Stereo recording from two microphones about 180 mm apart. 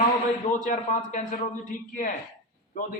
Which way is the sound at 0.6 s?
45° left (ahead or behind).